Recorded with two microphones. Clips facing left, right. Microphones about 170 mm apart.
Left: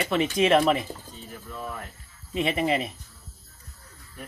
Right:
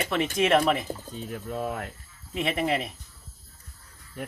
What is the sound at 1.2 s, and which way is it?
Speech, 60° right (ahead or behind).